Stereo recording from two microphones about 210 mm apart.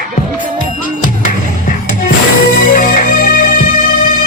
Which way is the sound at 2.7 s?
40° left (ahead or behind).